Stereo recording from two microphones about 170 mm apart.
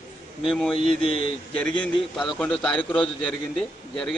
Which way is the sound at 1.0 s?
35° left (ahead or behind).